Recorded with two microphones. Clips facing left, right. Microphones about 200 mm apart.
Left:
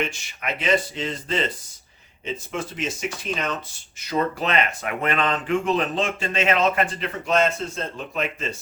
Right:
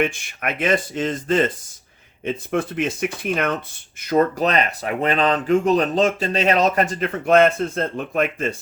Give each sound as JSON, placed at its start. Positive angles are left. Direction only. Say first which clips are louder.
{"t": 0.0, "sound": "speech", "louder": "right 6 dB", "side_deg": -55}
{"t": 4.0, "sound": "speech", "louder": "right 6 dB", "side_deg": -50}
{"t": 7.3, "sound": "speech", "louder": "right 6 dB", "side_deg": -55}